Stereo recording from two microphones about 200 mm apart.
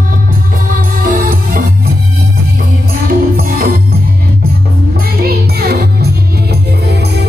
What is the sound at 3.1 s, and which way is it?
Music, 45° right (ahead or behind).